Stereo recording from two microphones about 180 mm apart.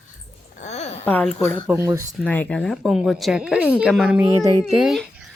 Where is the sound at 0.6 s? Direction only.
40° left (ahead or behind).